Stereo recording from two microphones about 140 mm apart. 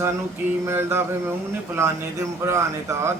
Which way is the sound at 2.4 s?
20° right (ahead or behind).